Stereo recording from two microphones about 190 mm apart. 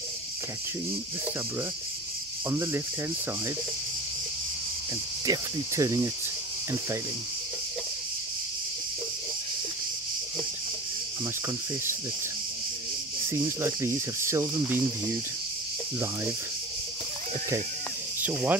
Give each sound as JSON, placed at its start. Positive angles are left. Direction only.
{"t": 2.5, "sound": "speech", "side_deg": -15}
{"t": 5.2, "sound": "speech", "side_deg": -20}
{"t": 13.3, "sound": "speech", "side_deg": -15}
{"t": 18.2, "sound": "speech", "side_deg": -10}